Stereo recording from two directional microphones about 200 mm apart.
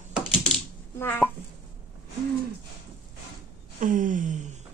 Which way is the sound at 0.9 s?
10° left (ahead or behind).